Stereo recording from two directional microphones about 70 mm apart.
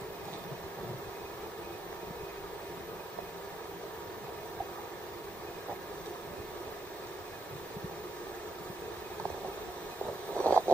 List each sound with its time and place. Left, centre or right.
10.4 s vehicle: centre